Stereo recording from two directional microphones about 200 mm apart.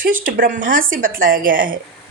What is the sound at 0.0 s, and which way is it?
A woman's voice, 45° right (ahead or behind).